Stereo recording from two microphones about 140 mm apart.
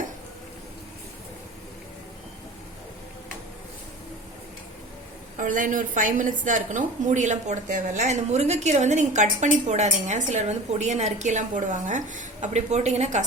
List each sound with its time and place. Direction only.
5.4 s a woman's voice: 70° right (ahead or behind)